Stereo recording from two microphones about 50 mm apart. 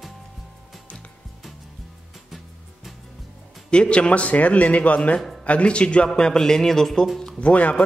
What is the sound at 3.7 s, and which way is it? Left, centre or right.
A man's voice, left.